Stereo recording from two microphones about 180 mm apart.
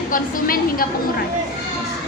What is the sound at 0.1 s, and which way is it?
Speech, 55° left (ahead or behind).